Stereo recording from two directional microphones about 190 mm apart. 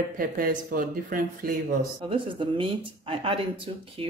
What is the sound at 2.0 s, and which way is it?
Speech, 25° right (ahead or behind).